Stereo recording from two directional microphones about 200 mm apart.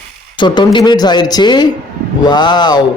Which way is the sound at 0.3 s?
25° left (ahead or behind).